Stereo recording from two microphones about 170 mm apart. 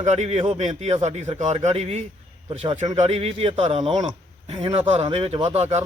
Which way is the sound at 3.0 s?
40° right (ahead or behind).